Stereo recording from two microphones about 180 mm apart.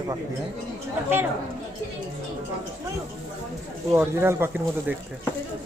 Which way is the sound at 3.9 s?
15° right (ahead or behind).